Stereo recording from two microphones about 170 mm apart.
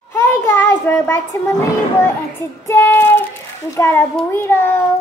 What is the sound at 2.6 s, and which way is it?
Child singing, 15° left (ahead or behind).